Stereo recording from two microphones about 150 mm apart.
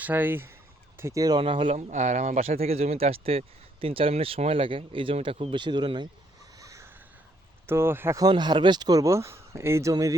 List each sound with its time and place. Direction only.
0.0 s fowl: 10° right (ahead or behind)
0.9 s speech: 20° right (ahead or behind)
1.4 s speech: 35° right (ahead or behind)
1.9 s speech: 50° right (ahead or behind); by 6.1 s 30° right (ahead or behind)
6.6 s a sound: 20° right (ahead or behind)
7.7 s speech: 15° right (ahead or behind)